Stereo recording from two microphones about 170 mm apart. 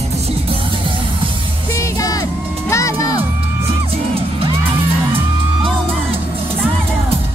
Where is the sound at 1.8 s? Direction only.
20° left (ahead or behind).